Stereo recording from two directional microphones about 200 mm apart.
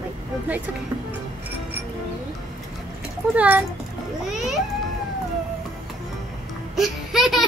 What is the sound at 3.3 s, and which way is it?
Speech, 5° right (ahead or behind).